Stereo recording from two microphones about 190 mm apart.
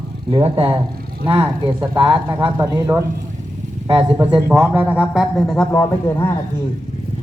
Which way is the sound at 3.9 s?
30° right (ahead or behind).